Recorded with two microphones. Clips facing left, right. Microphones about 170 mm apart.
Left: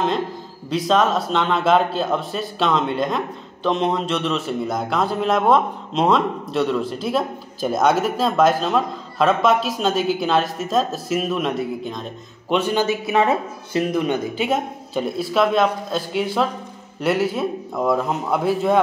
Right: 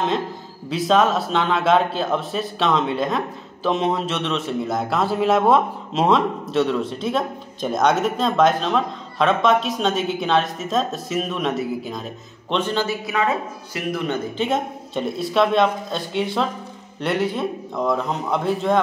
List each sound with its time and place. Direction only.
0.7 s a man's voice: centre (ahead or behind)
12.4 s a man's voice: 10° left (ahead or behind)